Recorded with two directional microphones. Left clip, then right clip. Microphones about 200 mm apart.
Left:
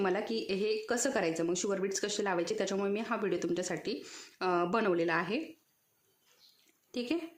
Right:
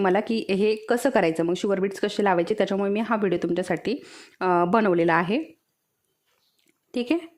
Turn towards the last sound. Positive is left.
turn(degrees=-45)  # may be behind; listen again after turning